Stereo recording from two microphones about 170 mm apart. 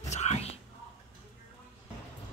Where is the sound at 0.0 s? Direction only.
40° left (ahead or behind).